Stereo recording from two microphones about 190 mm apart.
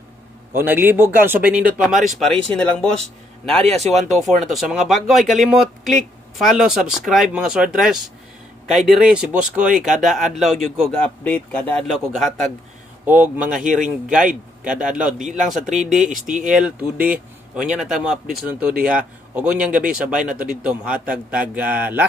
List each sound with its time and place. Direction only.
0.6 s speech: 10° right (ahead or behind)
16.0 s speech: 45° right (ahead or behind)
16.4 s speech: centre (ahead or behind)